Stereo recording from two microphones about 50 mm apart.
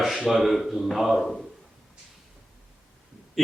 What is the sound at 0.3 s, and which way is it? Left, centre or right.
Speech, centre.